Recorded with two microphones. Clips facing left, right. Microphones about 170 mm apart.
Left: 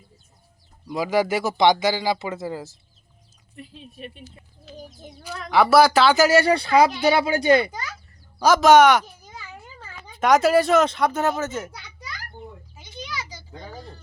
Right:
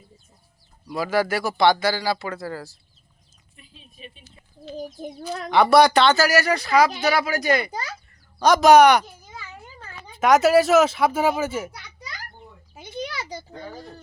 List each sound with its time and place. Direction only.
0.9 s speech: 15° left (ahead or behind)
3.5 s speech: 65° left (ahead or behind)
5.5 s speech: 5° left (ahead or behind)
6.1 s speech: 25° left (ahead or behind)
7.7 s a child's voice: 35° right (ahead or behind)
8.4 s speech: centre (ahead or behind)
10.2 s speech: centre (ahead or behind)
12.7 s a sound: 55° right (ahead or behind)